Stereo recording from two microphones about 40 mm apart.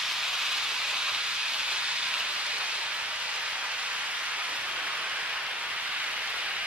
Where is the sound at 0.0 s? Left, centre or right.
Centre.